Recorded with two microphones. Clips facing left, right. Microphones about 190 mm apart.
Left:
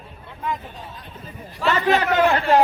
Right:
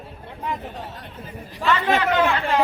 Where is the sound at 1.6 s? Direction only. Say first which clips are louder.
Left 1 dB; 45° left (ahead or behind).